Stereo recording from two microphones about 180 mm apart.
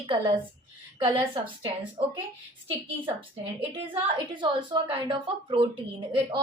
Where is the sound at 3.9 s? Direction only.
25° right (ahead or behind).